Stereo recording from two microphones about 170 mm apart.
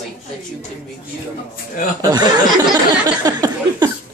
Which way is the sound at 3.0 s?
25° right (ahead or behind).